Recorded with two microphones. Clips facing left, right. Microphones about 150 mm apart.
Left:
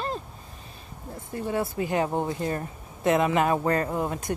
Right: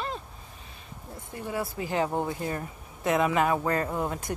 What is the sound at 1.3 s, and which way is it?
Speech, 25° right (ahead or behind).